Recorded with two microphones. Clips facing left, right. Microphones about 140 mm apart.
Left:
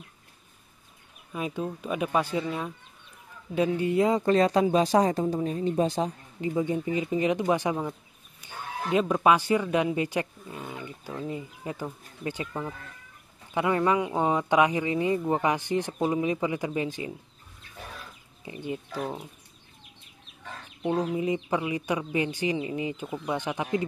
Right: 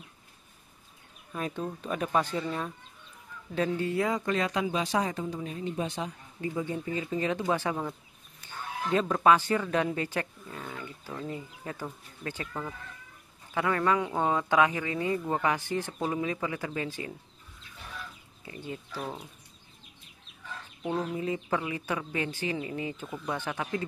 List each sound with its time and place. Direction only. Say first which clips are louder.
1.3 s speech: left 2 dB; 10° left (ahead or behind); by 6.1 s 35° left (ahead or behind)
6.4 s speech: left 5 dB; 20° left (ahead or behind)
18.4 s speech: left 5 dB; 20° left (ahead or behind)
20.9 s speech: left 4 dB; 15° left (ahead or behind)